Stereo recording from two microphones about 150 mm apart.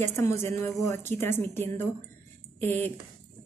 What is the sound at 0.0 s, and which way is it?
A woman's voice, 20° left (ahead or behind).